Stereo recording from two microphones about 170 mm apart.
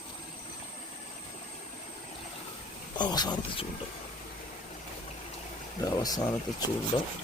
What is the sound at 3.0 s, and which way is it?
Speech, 25° left (ahead or behind).